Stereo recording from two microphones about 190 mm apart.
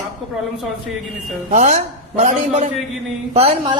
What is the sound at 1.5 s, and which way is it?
A man's voice, 35° right (ahead or behind).